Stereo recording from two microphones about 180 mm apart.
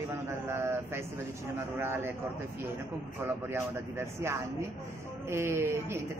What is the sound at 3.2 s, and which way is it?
Speech, 15° right (ahead or behind).